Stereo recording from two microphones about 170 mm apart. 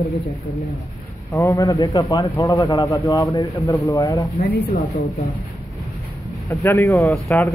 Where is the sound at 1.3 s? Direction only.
20° left (ahead or behind).